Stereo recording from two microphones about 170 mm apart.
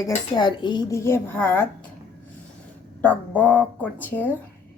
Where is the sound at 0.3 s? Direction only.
25° left (ahead or behind).